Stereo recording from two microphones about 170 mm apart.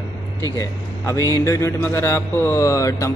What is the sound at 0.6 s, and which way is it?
A man's voice, 20° left (ahead or behind).